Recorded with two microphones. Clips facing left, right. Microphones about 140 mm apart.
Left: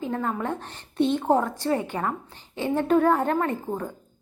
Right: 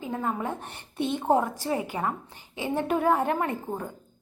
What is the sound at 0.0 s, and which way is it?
A woman's voice, 15° right (ahead or behind).